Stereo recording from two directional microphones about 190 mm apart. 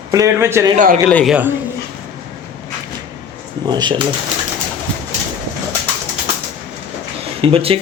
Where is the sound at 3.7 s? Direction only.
25° right (ahead or behind).